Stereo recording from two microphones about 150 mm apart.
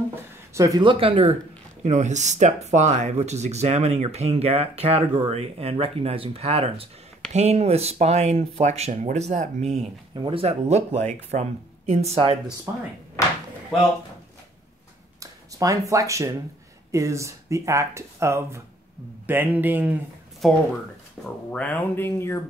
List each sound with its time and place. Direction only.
0.6 s speech: 25° right (ahead or behind)
1.8 s speech: 50° right (ahead or behind)
10.1 s speech: 35° right (ahead or behind)
12.7 s speech: 20° right (ahead or behind)
13.2 s a sound: 20° left (ahead or behind)
15.1 s speech: 20° right (ahead or behind)
20.4 s speech: centre (ahead or behind)